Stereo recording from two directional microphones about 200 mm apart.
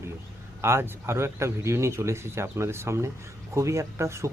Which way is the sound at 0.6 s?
10° right (ahead or behind).